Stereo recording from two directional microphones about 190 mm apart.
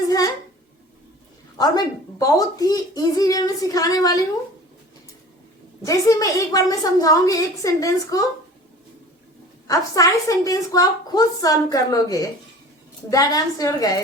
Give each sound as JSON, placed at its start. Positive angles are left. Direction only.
{"t": 1.5, "sound": "a child's voice", "side_deg": 20}
{"t": 5.8, "sound": "a woman's voice", "side_deg": 15}
{"t": 9.6, "sound": "a woman's voice", "side_deg": 15}